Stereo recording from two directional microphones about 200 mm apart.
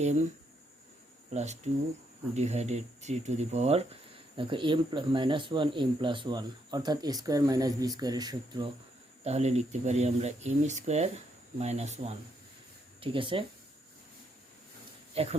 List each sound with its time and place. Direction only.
1.3 s speech: 35° right (ahead or behind)
9.2 s speech: 35° right (ahead or behind)
15.1 s speech: 30° right (ahead or behind)